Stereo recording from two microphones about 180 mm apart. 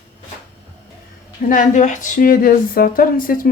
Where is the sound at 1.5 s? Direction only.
45° left (ahead or behind).